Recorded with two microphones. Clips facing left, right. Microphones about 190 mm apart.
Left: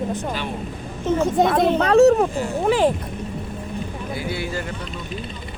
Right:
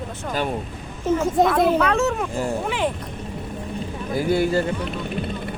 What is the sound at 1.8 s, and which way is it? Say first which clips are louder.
Speech: left 7 dB; 35° left (ahead or behind).